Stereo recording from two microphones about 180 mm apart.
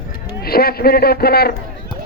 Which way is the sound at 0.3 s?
60° left (ahead or behind).